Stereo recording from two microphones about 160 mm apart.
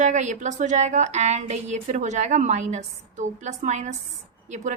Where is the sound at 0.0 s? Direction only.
50° right (ahead or behind).